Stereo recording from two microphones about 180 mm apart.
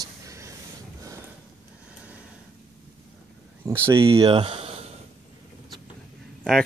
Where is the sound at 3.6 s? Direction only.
15° right (ahead or behind).